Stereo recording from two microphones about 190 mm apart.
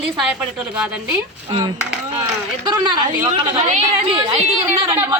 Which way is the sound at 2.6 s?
20° right (ahead or behind).